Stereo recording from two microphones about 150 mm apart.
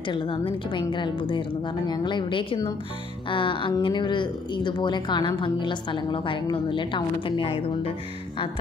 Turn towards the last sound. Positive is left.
turn(degrees=35)  # may be behind; listen again after turning